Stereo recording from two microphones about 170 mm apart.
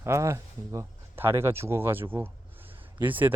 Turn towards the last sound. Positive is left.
turn(degrees=-10)  # may be behind; listen again after turning